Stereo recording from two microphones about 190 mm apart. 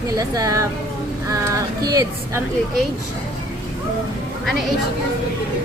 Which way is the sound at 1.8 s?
20° right (ahead or behind).